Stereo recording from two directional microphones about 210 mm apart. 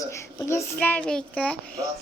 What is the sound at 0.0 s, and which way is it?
A child's voice, 15° left (ahead or behind).